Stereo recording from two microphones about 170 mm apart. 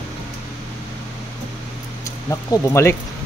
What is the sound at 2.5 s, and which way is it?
Speech, 15° left (ahead or behind).